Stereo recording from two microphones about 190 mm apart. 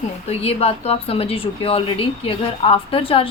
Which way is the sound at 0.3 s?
30° left (ahead or behind).